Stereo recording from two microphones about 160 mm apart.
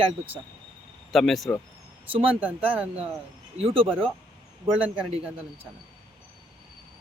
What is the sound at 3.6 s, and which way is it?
Speech, 35° right (ahead or behind).